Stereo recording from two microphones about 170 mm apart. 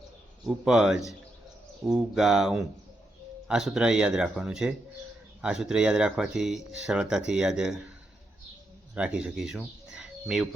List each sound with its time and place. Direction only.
0.4 s speech: 5° right (ahead or behind)
9.0 s speech: 5° right (ahead or behind)